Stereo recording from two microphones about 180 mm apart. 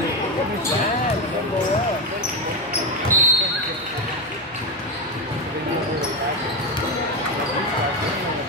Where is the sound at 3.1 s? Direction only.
15° right (ahead or behind).